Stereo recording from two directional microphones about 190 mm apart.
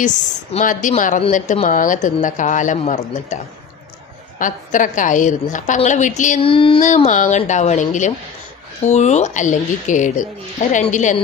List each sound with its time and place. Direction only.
0.5 s a woman's voice: 45° left (ahead or behind)
4.4 s a woman's voice: 45° left (ahead or behind)
6.5 s a sound: 30° left (ahead or behind)
6.8 s a woman's voice: 40° left (ahead or behind)